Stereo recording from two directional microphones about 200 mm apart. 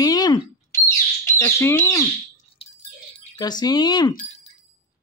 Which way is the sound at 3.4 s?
20° left (ahead or behind).